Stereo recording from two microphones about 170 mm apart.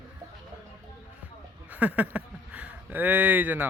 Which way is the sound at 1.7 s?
10° right (ahead or behind).